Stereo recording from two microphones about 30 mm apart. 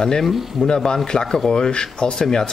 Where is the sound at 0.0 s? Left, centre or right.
Left.